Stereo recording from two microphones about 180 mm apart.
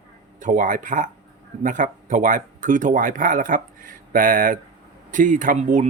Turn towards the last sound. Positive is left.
turn(degrees=-45)  # may be behind; listen again after turning